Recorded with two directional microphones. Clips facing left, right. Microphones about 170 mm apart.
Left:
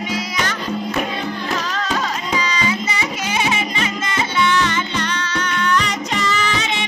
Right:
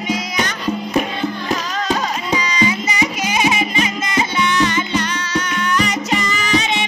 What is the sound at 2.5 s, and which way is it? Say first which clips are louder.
Music: right 3 dB; 15° right (ahead or behind).